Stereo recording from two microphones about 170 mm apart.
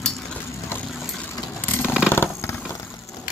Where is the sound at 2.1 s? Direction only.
15° left (ahead or behind).